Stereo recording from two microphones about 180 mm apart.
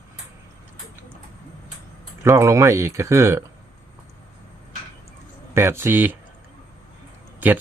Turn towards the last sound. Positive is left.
turn(degrees=-10)  # may be behind; listen again after turning